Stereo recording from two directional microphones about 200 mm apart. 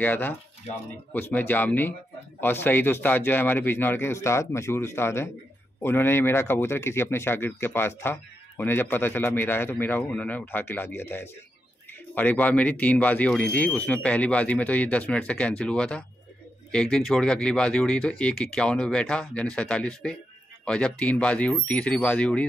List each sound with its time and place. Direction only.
0.0 s speech: 10° left (ahead or behind)